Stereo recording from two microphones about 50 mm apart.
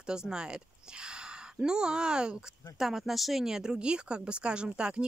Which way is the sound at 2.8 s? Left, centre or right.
Centre.